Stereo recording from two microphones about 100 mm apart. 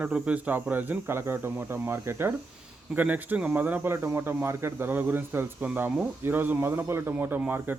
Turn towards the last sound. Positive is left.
turn(degrees=-20)  # may be behind; listen again after turning